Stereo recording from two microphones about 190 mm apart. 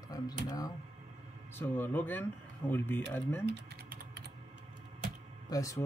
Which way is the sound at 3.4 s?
65° right (ahead or behind).